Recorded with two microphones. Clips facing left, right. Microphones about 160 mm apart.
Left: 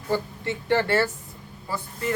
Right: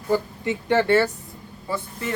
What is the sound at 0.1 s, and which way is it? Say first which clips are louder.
Speech: right 4 dB; 15° right (ahead or behind).